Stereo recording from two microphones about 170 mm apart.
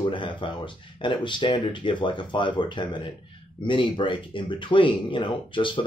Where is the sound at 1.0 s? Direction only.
30° left (ahead or behind).